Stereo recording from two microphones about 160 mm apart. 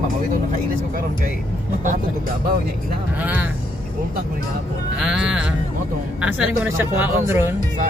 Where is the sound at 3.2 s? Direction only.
10° right (ahead or behind).